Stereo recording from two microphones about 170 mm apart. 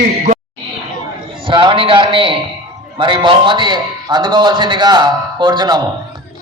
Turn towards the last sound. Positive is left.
turn(degrees=-25)  # may be behind; listen again after turning